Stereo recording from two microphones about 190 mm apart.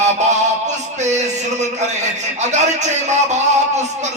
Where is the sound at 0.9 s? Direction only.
40° right (ahead or behind).